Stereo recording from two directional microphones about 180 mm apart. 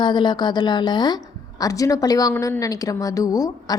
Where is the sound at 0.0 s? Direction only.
25° left (ahead or behind).